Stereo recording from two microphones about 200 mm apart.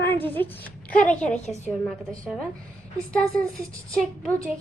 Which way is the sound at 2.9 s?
5° left (ahead or behind).